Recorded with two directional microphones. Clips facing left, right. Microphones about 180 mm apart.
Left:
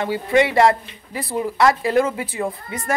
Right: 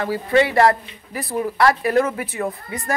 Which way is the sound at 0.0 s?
25° left (ahead or behind).